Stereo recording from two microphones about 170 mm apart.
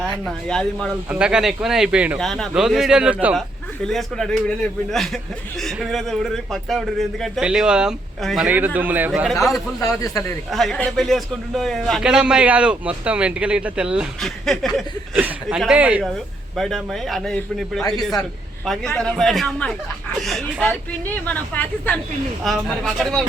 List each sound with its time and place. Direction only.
0.0 s a man's voice: 5° left (ahead or behind)
3.8 s a man's voice: centre (ahead or behind)
9.8 s a man's voice: 20° left (ahead or behind)
10.5 s a man's voice: centre (ahead or behind)
15.1 s a man's voice: 10° right (ahead or behind)